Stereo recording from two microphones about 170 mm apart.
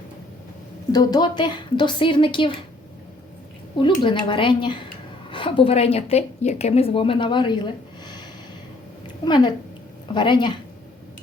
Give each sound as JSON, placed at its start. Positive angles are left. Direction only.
{"t": 0.9, "sound": "a woman's voice", "side_deg": 25}
{"t": 3.8, "sound": "a woman's voice", "side_deg": 30}
{"t": 9.2, "sound": "a woman's voice", "side_deg": 25}